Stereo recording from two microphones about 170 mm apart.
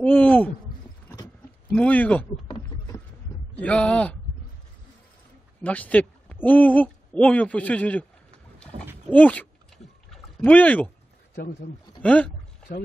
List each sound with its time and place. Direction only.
0.0 s speech: 10° left (ahead or behind)
1.7 s speech: 10° left (ahead or behind)
3.5 s speech: 5° left (ahead or behind)
5.6 s speech: 10° left (ahead or behind)
8.7 s a sound: 35° right (ahead or behind)
9.1 s speech: 10° left (ahead or behind)
12.0 s speech: 5° left (ahead or behind)